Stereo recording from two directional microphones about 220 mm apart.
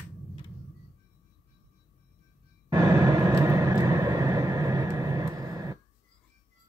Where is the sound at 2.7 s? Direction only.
15° right (ahead or behind).